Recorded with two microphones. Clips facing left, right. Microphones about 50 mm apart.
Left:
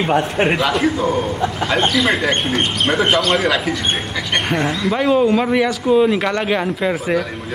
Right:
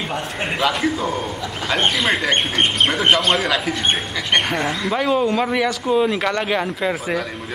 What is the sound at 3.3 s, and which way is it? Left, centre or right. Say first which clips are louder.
Speech: left 3 dB; centre.